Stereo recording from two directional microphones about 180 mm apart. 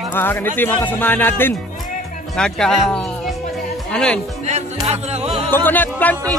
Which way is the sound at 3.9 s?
5° left (ahead or behind).